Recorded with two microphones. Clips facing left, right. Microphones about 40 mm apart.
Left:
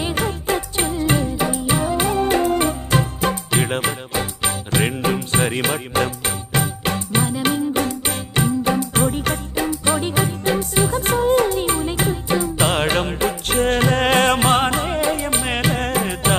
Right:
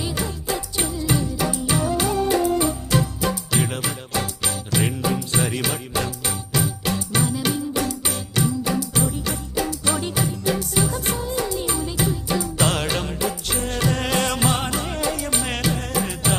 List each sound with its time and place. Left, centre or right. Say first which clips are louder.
0.0 s music: left 5 dB; left
1.4 s music: left 3 dB; left
9.6 s music: left 4 dB; left
12.5 s music: left 1 dB; left
12.8 s music: left 5 dB; left
15.7 s music: left 4 dB; left